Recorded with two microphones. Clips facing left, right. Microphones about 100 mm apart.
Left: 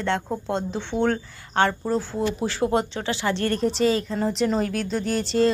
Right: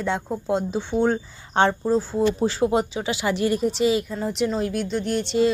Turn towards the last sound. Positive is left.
turn(degrees=0)  # may be behind; listen again after turning